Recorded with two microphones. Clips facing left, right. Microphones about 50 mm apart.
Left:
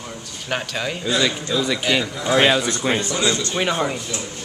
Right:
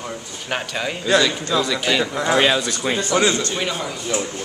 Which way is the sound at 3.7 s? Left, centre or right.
Left.